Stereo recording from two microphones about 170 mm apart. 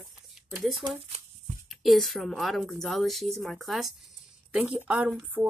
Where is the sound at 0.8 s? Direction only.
25° right (ahead or behind).